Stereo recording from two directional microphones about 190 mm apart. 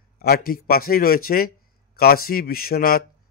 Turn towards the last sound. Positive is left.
turn(degrees=50)  # may be behind; listen again after turning